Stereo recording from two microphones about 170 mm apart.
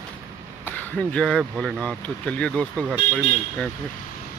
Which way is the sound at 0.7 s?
10° left (ahead or behind).